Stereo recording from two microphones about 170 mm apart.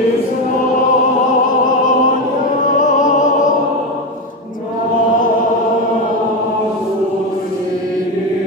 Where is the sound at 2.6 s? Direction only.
50° left (ahead or behind).